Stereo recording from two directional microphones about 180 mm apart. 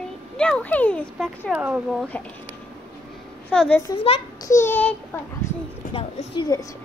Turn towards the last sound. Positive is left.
turn(degrees=20)  # may be behind; listen again after turning